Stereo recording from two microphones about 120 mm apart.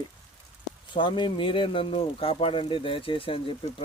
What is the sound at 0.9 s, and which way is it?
Speech, 45° left (ahead or behind).